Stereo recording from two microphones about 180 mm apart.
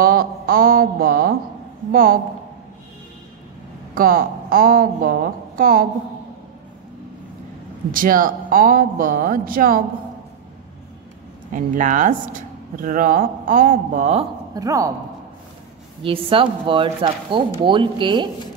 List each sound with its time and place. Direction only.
0.0 s a sound: 55° right (ahead or behind)
1.9 s speech: 55° right (ahead or behind)
3.9 s speech: 50° right (ahead or behind)
7.9 s speech: 50° right (ahead or behind)
11.5 s speech: 45° right (ahead or behind)
14.5 s a woman's voice: 20° right (ahead or behind)
16.0 s speech: 30° right (ahead or behind)